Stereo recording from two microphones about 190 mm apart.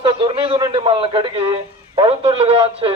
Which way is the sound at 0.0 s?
25° right (ahead or behind).